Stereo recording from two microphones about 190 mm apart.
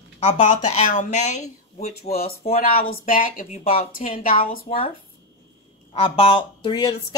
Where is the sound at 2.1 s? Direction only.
50° left (ahead or behind).